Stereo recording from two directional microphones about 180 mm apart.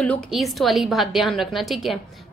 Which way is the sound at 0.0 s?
Centre (ahead or behind).